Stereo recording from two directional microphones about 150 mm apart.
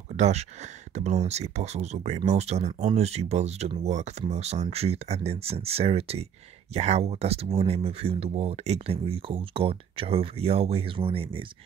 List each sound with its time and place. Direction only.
0.1 s speech: 50° right (ahead or behind)